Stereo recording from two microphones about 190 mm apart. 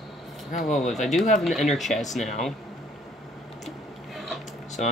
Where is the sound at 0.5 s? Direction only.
40° left (ahead or behind).